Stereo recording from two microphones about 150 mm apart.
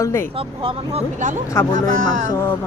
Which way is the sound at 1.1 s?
55° right (ahead or behind).